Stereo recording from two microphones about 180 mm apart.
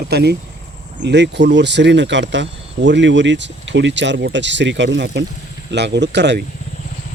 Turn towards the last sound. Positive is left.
turn(degrees=-70)  # may be behind; listen again after turning